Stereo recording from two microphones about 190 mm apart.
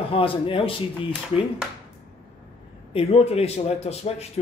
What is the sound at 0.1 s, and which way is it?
Speech, 30° left (ahead or behind).